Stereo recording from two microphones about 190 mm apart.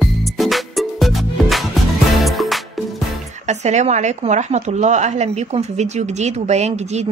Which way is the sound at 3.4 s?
35° right (ahead or behind).